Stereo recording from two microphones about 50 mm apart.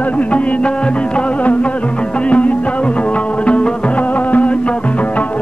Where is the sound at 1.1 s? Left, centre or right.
Left.